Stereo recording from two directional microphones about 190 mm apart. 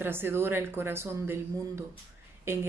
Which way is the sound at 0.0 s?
10° right (ahead or behind).